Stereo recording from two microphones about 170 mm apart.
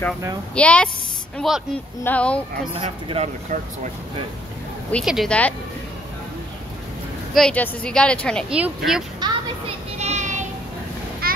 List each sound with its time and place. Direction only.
0.6 s a woman's voice: 5° left (ahead or behind)
2.7 s speech: 35° right (ahead or behind)
5.0 s a woman's voice: centre (ahead or behind)
7.3 s a woman's voice: 5° left (ahead or behind)
8.5 s a woman's voice: 5° right (ahead or behind)
9.2 s speech: 25° right (ahead or behind)
9.9 s child singing: 40° right (ahead or behind)
11.2 s a sound: 60° right (ahead or behind)